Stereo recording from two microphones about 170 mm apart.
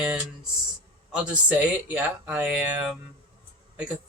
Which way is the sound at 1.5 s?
10° right (ahead or behind).